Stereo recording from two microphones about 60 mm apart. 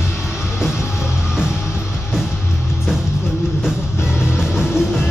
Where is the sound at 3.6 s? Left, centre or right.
Centre.